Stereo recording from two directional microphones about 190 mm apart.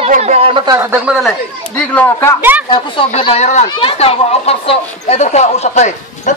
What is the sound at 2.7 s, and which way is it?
Speech, 25° left (ahead or behind).